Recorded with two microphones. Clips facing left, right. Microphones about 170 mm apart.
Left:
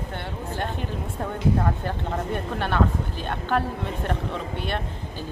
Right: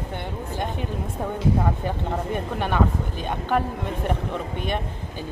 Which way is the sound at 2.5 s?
10° right (ahead or behind).